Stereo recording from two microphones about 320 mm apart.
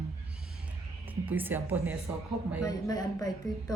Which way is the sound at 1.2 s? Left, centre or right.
Centre.